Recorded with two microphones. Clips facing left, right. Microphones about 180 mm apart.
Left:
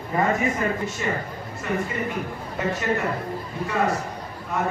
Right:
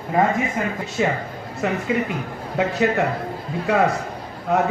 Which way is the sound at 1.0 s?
90° right.